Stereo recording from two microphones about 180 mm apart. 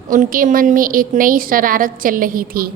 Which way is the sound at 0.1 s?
50° right (ahead or behind).